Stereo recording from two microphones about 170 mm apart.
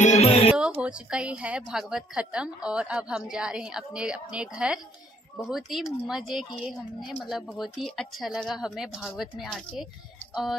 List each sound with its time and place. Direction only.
0.0 s music: 40° left (ahead or behind)
0.6 s a woman's voice: 5° right (ahead or behind)